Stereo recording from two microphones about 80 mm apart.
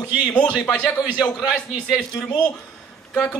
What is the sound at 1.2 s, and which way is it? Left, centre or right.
Speech, centre.